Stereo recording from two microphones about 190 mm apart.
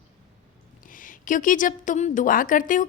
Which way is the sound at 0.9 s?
45° left (ahead or behind).